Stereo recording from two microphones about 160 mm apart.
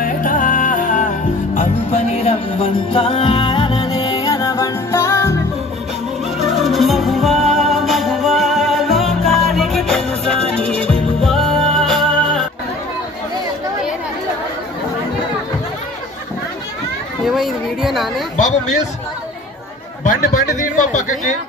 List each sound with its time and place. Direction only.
0.0 s music: 55° left (ahead or behind); by 5.4 s 15° left (ahead or behind)
6.4 s music: centre (ahead or behind)
17.2 s speech: centre (ahead or behind)
18.3 s a man's voice: 50° left (ahead or behind)
20.0 s a man's voice: 55° left (ahead or behind)